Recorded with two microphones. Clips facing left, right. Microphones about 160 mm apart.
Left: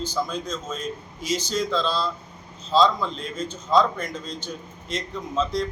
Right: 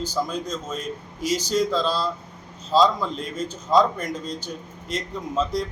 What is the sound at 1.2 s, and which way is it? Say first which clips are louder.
Speech: right 2 dB; 40° right (ahead or behind).